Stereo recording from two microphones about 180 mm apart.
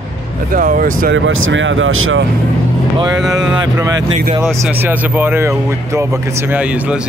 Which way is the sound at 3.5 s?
20° right (ahead or behind).